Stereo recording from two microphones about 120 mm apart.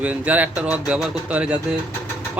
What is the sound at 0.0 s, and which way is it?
Speech, 10° right (ahead or behind).